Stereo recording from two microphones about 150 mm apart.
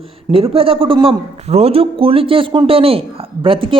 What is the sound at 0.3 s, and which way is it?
A man's voice, 40° right (ahead or behind).